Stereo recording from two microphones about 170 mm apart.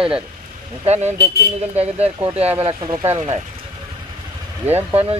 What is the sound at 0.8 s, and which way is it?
Speech, 40° right (ahead or behind).